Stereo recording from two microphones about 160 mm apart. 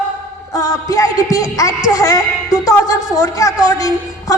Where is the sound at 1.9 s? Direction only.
20° left (ahead or behind).